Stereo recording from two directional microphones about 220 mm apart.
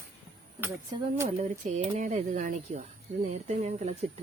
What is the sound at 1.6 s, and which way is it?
Speech, 30° right (ahead or behind).